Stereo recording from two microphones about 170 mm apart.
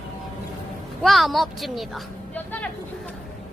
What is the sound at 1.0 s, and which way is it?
A woman's voice, centre (ahead or behind).